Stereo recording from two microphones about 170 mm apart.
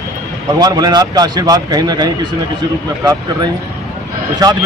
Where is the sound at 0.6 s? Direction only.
25° right (ahead or behind).